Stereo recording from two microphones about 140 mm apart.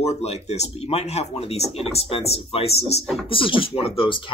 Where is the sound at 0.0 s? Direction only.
50° left (ahead or behind).